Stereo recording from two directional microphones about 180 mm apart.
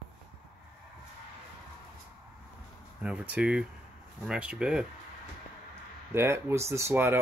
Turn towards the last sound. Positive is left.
turn(degrees=-10)  # may be behind; listen again after turning